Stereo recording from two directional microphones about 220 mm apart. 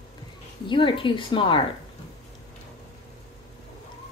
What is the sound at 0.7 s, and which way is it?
Speech, 25° left (ahead or behind).